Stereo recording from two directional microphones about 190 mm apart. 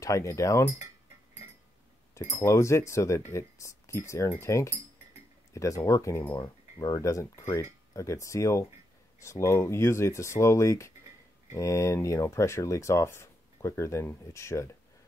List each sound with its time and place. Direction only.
0.0 s speech: 15° left (ahead or behind)
2.1 s speech: 15° left (ahead or behind)